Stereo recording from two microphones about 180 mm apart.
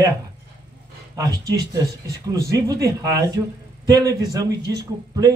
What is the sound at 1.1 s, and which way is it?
Speech, 20° right (ahead or behind).